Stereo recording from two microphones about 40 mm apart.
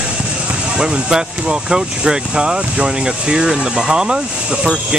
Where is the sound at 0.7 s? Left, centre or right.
Centre.